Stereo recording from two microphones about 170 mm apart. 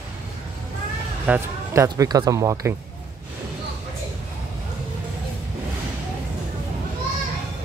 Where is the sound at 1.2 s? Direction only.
10° right (ahead or behind).